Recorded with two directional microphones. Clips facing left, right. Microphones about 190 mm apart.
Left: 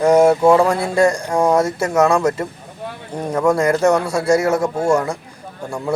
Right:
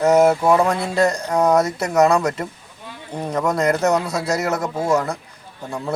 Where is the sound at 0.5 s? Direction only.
30° left (ahead or behind).